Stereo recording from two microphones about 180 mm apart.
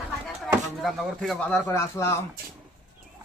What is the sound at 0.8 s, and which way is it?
A man's voice, centre (ahead or behind).